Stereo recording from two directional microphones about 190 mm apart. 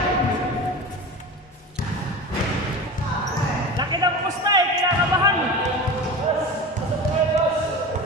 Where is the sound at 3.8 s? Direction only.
20° right (ahead or behind).